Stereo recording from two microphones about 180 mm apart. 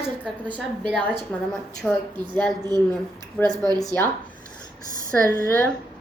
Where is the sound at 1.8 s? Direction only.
Centre (ahead or behind).